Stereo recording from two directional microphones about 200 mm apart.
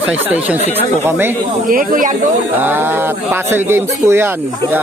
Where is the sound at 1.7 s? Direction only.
45° right (ahead or behind).